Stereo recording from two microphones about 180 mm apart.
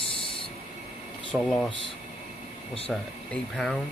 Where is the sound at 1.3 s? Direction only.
5° left (ahead or behind).